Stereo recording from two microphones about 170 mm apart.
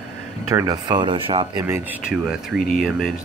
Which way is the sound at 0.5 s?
20° right (ahead or behind).